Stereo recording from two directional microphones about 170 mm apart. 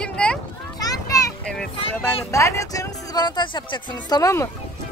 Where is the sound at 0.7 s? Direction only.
20° left (ahead or behind).